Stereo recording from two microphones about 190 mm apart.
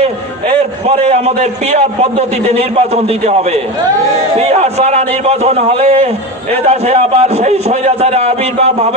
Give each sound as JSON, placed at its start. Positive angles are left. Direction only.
{"t": 0.0, "sound": "a man's voice", "side_deg": -35}